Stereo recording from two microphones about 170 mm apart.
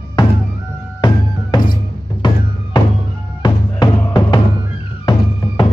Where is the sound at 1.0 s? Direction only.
25° left (ahead or behind).